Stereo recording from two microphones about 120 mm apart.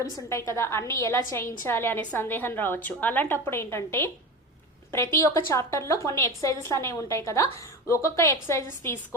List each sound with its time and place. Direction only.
0.0 s a woman's voice: 25° left (ahead or behind)